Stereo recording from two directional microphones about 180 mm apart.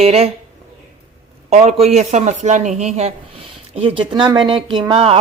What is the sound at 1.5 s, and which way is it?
Speech, 40° right (ahead or behind).